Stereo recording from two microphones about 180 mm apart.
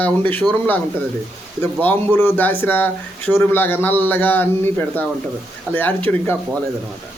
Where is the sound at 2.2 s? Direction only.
10° left (ahead or behind).